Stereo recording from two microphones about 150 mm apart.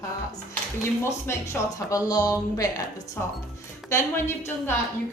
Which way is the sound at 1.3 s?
15° left (ahead or behind).